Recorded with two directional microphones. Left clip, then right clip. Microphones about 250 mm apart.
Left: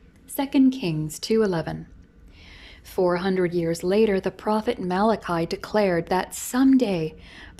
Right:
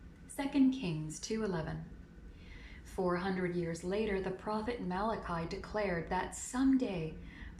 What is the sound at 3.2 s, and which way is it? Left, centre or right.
A woman's voice, left.